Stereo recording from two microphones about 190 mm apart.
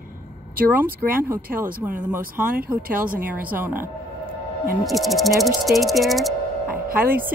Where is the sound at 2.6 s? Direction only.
50° right (ahead or behind).